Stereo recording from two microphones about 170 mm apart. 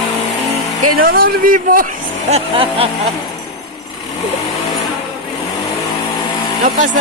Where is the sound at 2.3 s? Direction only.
35° right (ahead or behind).